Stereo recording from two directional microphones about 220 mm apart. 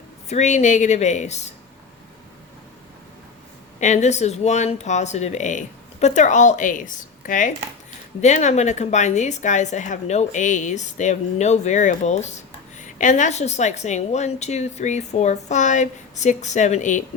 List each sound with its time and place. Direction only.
0.3 s a woman's voice: 30° left (ahead or behind)
3.8 s a woman's voice: 35° left (ahead or behind)